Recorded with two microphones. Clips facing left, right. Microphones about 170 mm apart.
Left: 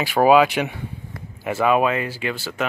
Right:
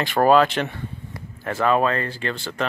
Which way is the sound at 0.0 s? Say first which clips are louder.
Left 1 dB; 5° left (ahead or behind).